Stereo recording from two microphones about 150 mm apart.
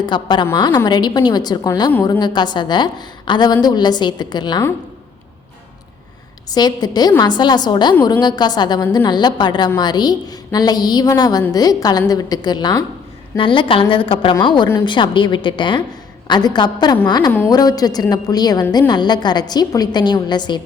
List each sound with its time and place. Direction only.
0.0 s a woman's voice: 30° left (ahead or behind)
6.5 s a woman's voice: 25° left (ahead or behind)